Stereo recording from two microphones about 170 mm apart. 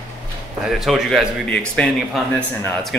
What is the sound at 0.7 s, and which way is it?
A man's voice, centre (ahead or behind).